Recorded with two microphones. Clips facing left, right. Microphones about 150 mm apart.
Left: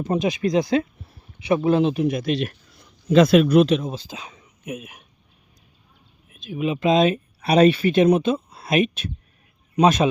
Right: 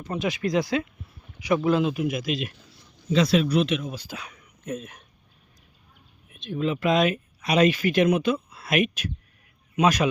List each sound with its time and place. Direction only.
0.0 s speech: 20° left (ahead or behind)
0.8 s speech: 35° left (ahead or behind)
3.1 s speech: 55° left (ahead or behind)
3.7 s speech: 30° left (ahead or behind)
4.6 s speech: 10° left (ahead or behind)
6.2 s a sound: centre (ahead or behind)
6.6 s speech: 20° left (ahead or behind)